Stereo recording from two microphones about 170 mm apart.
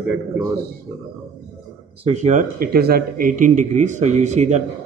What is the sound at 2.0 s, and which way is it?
A man's voice, 40° right (ahead or behind).